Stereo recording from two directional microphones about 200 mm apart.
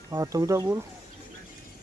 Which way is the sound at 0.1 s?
15° right (ahead or behind).